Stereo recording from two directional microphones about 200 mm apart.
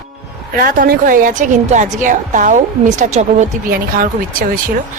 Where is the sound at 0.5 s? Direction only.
45° right (ahead or behind).